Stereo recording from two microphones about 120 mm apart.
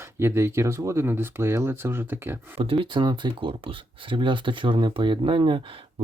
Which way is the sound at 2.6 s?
45° right (ahead or behind).